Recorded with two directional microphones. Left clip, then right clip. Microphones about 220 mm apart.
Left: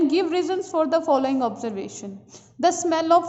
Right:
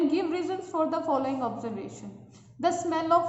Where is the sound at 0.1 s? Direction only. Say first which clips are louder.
Left 6 dB; 40° left (ahead or behind).